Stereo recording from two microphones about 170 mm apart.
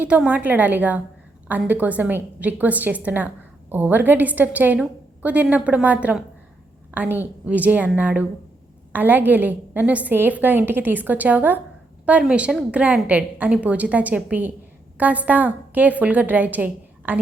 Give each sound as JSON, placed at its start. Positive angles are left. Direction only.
{"t": 0.0, "sound": "a woman's voice", "side_deg": -10}